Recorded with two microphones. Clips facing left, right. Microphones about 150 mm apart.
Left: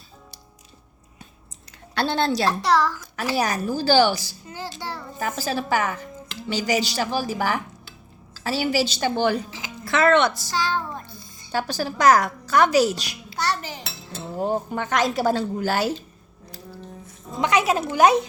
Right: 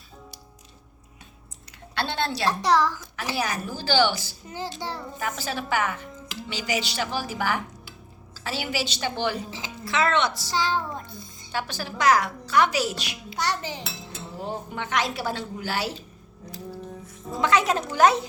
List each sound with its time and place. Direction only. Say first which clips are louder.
2.0 s a woman's voice: left 5 dB; 40° left (ahead or behind)
2.6 s a child's voice: left 1 dB; 15° right (ahead or behind)
3.3 s a woman's voice: left 6 dB; 40° left (ahead or behind)
4.4 s child singing: right 1 dB; 20° right (ahead or behind)
5.2 s a woman's voice: left 5 dB; 40° left (ahead or behind)
9.5 s speech: right 1 dB; 25° right (ahead or behind)
9.8 s a woman's voice: left 5 dB; 50° left (ahead or behind)
10.5 s child singing: even; 20° right (ahead or behind)
11.5 s a woman's voice: left 5 dB; 40° left (ahead or behind)
13.3 s child singing: left 2 dB; 20° right (ahead or behind)
14.3 s a woman's voice: left 8 dB; 45° left (ahead or behind)
17.3 s speech: left 2 dB; 15° left (ahead or behind)